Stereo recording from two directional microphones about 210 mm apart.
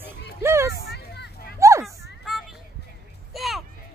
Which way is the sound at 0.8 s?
50° left (ahead or behind).